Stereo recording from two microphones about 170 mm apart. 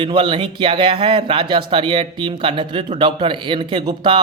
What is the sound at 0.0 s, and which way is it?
Speech, 30° right (ahead or behind).